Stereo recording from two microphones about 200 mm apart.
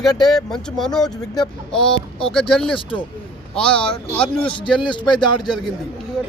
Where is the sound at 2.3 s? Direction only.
5° left (ahead or behind).